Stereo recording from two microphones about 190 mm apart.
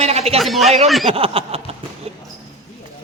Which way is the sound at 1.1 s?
30° right (ahead or behind).